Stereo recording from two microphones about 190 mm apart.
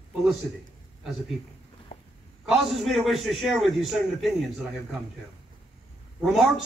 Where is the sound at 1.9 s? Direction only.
45° left (ahead or behind).